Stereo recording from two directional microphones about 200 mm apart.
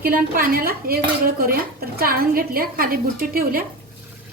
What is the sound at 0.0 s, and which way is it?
Speech, 45° right (ahead or behind).